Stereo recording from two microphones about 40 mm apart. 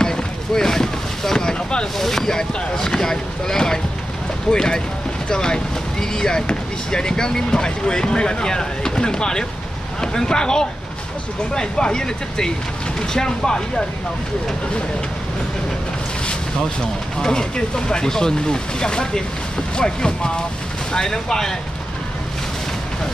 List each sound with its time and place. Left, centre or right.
0.0 s boat: centre
2.0 s speech: centre
17.2 s speech: centre